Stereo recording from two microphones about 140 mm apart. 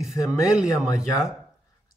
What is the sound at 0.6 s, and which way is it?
Speech, 25° left (ahead or behind).